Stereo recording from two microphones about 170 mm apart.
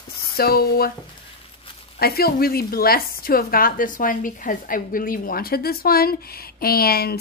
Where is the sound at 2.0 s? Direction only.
65° left (ahead or behind).